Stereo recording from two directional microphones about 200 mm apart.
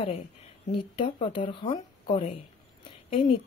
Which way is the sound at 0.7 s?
25° left (ahead or behind).